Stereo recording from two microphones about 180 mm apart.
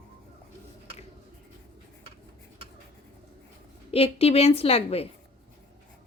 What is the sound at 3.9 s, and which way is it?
A woman's voice, 35° left (ahead or behind).